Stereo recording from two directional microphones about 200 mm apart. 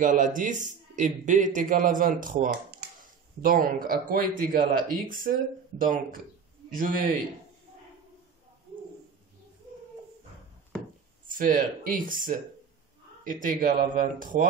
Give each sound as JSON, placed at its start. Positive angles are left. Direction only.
{"t": 0.0, "sound": "a man's voice", "side_deg": -40}
{"t": 6.7, "sound": "speech", "side_deg": -45}
{"t": 11.2, "sound": "speech", "side_deg": -40}